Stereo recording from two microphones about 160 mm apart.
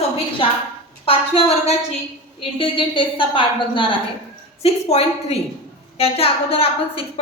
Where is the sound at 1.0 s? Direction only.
40° left (ahead or behind).